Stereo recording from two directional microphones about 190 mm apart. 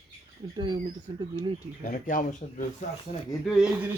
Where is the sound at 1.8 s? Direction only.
45° left (ahead or behind).